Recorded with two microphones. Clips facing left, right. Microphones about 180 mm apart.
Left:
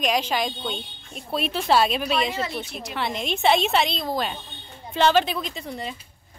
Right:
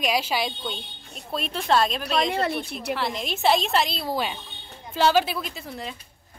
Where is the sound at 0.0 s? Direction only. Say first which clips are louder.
Left 1 dB; 5° right (ahead or behind).